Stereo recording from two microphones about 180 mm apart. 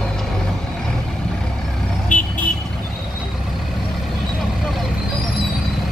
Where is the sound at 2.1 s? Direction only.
45° left (ahead or behind).